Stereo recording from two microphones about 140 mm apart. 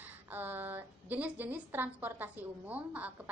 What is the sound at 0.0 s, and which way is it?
A woman's voice, 15° right (ahead or behind).